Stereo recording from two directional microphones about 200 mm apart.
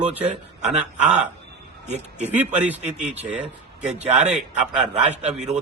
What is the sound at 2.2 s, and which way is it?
Speech, 10° right (ahead or behind).